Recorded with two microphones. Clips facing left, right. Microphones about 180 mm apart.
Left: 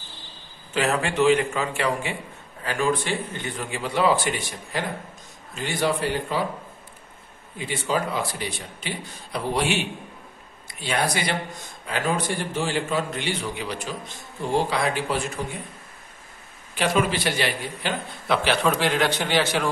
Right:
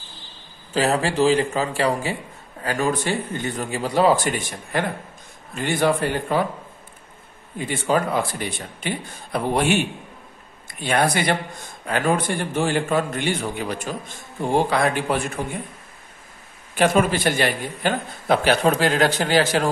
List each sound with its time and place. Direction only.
0.7 s a man's voice: 35° right (ahead or behind); by 6.4 s 55° right (ahead or behind)
7.5 s a man's voice: 50° right (ahead or behind)
16.7 s a man's voice: 50° right (ahead or behind)